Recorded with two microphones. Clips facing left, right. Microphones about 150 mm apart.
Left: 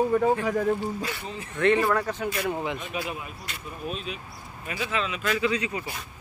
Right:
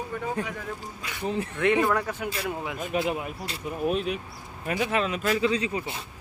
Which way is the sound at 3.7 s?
65° right (ahead or behind).